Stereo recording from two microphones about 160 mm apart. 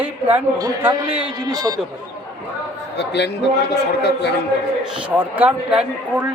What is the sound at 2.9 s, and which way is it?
Speech, 90° left.